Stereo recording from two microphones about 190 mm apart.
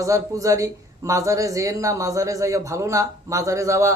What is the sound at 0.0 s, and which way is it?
Speech, 15° right (ahead or behind).